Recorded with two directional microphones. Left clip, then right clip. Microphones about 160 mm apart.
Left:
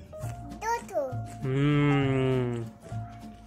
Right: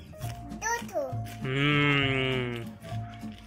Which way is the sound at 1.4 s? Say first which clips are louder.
Right 2 dB; 30° left (ahead or behind).